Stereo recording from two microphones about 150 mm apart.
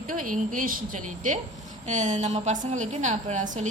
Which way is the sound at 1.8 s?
55° right (ahead or behind).